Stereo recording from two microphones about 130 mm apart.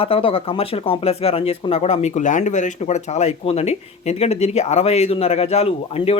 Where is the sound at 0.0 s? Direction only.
45° left (ahead or behind).